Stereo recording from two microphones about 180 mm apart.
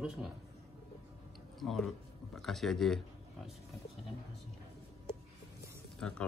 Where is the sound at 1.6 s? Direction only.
Centre (ahead or behind).